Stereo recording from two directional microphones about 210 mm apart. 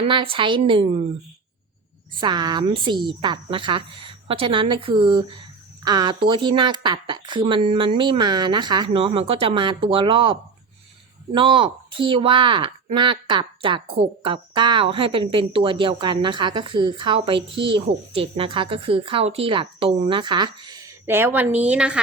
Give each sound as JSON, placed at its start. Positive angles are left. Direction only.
{"t": 0.0, "sound": "speech", "side_deg": -25}
{"t": 2.2, "sound": "speech", "side_deg": -20}